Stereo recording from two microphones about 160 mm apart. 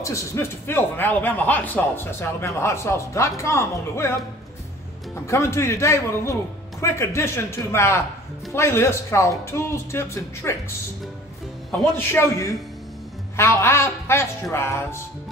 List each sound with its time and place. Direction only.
0.0 s speech: 20° left (ahead or behind)
5.2 s speech: 15° left (ahead or behind)
12.1 s speech: 15° left (ahead or behind)